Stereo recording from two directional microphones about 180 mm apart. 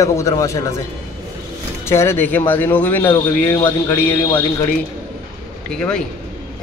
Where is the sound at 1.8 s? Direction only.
15° left (ahead or behind).